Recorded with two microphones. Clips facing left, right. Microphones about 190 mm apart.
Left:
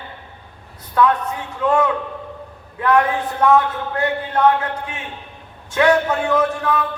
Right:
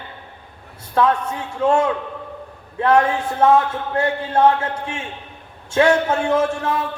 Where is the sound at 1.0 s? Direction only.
30° right (ahead or behind).